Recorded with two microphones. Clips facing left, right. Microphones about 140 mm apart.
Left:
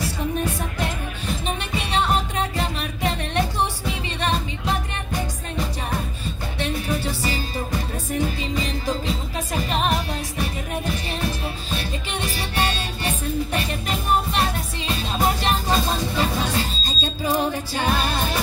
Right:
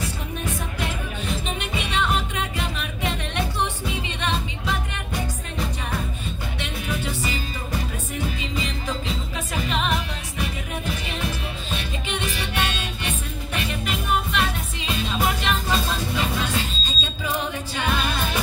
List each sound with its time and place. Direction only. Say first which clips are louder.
0.0 s music: left 5 dB; 35° left (ahead or behind)
6.6 s music: left 5 dB; 35° left (ahead or behind)